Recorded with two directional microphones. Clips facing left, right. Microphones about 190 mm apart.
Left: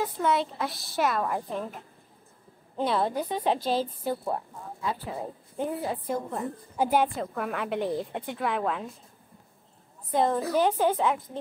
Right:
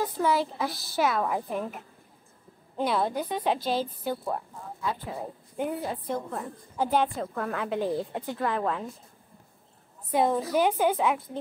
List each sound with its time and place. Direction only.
0.0 s a woman's voice: 5° right (ahead or behind)
2.9 s a woman's voice: centre (ahead or behind)
3.5 s a woman's voice: 30° left (ahead or behind)
4.0 s a woman's voice: 5° left (ahead or behind)
5.6 s a woman's voice: centre (ahead or behind)
10.1 s a woman's voice: 5° right (ahead or behind)